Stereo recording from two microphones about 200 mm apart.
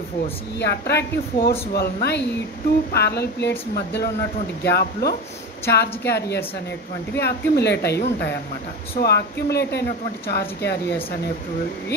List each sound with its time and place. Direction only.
0.6 s a woman's voice: 55° left (ahead or behind)